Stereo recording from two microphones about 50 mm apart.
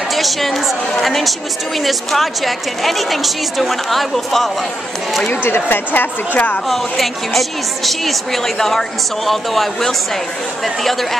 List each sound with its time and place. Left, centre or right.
0.1 s a woman's voice: centre
5.3 s a woman's voice: left
6.7 s a woman's voice: centre